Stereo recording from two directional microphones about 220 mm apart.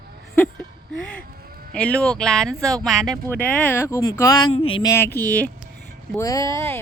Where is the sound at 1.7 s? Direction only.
5° left (ahead or behind).